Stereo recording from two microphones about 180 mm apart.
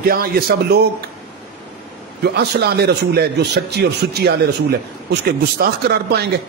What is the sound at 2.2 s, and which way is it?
A man's voice, 65° right (ahead or behind).